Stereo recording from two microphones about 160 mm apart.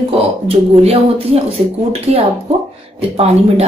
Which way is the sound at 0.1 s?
35° right (ahead or behind).